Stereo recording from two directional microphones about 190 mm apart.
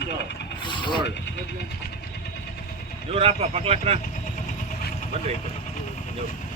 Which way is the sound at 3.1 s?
30° right (ahead or behind).